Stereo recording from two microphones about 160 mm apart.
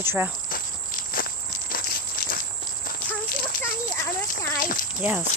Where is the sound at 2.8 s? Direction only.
60° left (ahead or behind).